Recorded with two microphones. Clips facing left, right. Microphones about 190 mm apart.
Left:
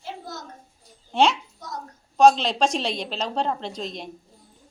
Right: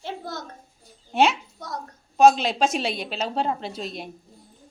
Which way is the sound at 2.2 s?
5° right (ahead or behind).